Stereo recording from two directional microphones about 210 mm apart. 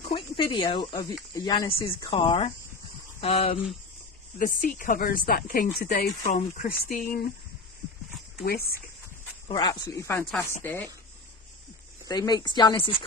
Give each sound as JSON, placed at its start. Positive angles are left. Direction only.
{"t": 0.1, "sound": "speech", "side_deg": 25}
{"t": 4.4, "sound": "speech", "side_deg": 40}
{"t": 6.7, "sound": "speech", "side_deg": 45}
{"t": 8.4, "sound": "speech", "side_deg": 45}
{"t": 9.5, "sound": "speech", "side_deg": 20}
{"t": 12.1, "sound": "speech", "side_deg": 20}